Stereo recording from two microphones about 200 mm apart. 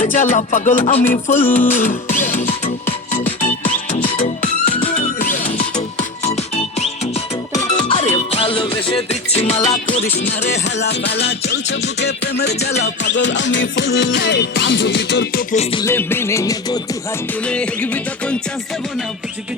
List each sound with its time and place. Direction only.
0.0 s music: 40° left (ahead or behind)
7.9 s music: 30° left (ahead or behind)
10.2 s music: 60° left (ahead or behind)
15.5 s music: 30° left (ahead or behind)
15.8 s music: 10° left (ahead or behind)
17.4 s music: 5° left (ahead or behind)